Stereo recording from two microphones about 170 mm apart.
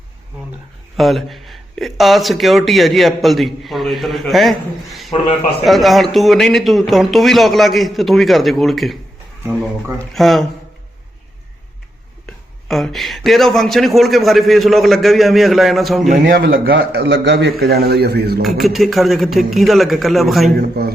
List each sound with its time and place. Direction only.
0.9 s speech: centre (ahead or behind)
10.1 s speech: centre (ahead or behind)
12.2 s speech: centre (ahead or behind)
16.2 s a man's voice: 60° right (ahead or behind)
18.4 s speech: centre (ahead or behind)
20.6 s a man's voice: 65° right (ahead or behind)